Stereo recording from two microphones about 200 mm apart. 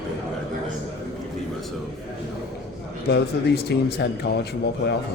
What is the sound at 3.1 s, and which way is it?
Speech, 55° left (ahead or behind).